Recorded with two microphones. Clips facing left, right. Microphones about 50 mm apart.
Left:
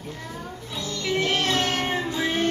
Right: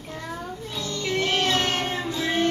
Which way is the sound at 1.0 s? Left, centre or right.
Centre.